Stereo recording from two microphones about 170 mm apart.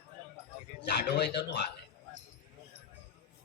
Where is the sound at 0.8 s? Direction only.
85° left.